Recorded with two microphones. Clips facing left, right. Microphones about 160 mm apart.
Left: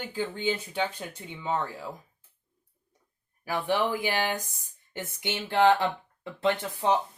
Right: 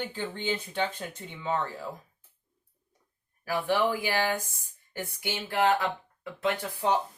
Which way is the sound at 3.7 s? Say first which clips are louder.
Even; 20° left (ahead or behind).